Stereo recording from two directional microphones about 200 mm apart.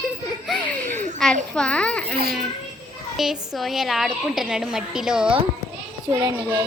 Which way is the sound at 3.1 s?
Centre (ahead or behind).